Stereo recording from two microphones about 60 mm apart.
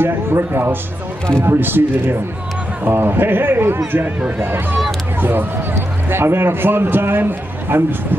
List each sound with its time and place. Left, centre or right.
0.0 s a man's voice: right